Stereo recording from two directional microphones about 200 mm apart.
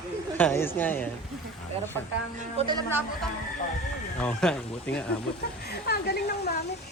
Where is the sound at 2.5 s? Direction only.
20° right (ahead or behind).